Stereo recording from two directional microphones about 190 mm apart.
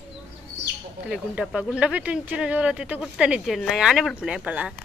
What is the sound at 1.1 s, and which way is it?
Speech, 5° right (ahead or behind).